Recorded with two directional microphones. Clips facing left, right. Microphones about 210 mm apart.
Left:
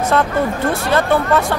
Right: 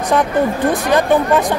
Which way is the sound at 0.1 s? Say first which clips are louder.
Right 4 dB; 15° right (ahead or behind).